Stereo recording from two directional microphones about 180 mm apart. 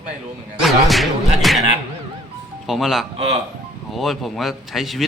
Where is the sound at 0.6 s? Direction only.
Centre (ahead or behind).